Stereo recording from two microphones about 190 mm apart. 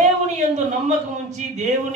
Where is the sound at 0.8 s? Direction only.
40° right (ahead or behind).